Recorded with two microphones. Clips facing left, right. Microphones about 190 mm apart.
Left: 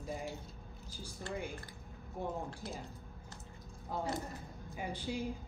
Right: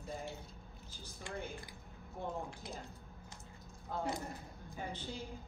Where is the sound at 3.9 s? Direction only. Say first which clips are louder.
Left 1 dB; 10° left (ahead or behind).